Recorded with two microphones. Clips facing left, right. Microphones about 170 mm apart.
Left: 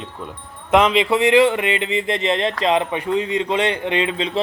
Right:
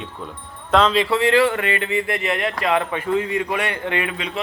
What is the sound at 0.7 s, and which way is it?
Speech, 15° left (ahead or behind).